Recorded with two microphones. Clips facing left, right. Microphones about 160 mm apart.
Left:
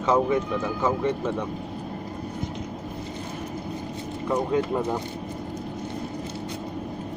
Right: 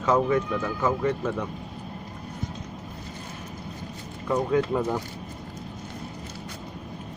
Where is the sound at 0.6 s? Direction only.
10° left (ahead or behind).